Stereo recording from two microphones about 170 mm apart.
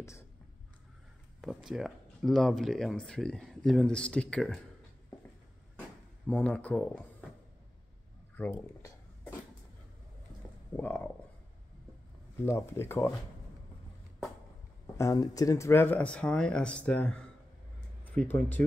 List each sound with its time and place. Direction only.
1.4 s speech: centre (ahead or behind)
5.8 s a sound: 10° left (ahead or behind)
8.4 s speech: 15° left (ahead or behind)
12.4 s speech: 15° left (ahead or behind)
15.0 s speech: 20° left (ahead or behind)